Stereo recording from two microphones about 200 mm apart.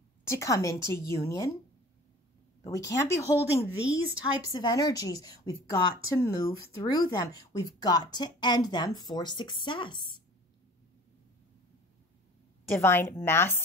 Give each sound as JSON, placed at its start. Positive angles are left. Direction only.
{"t": 0.3, "sound": "speech", "side_deg": 15}
{"t": 2.6, "sound": "speech", "side_deg": 15}
{"t": 3.7, "sound": "speech", "side_deg": -5}
{"t": 4.2, "sound": "a woman's voice", "side_deg": 20}
{"t": 12.7, "sound": "speech", "side_deg": 10}